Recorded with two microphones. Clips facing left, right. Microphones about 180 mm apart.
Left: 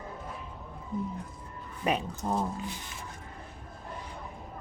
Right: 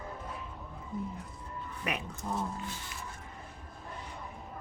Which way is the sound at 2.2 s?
40° left (ahead or behind).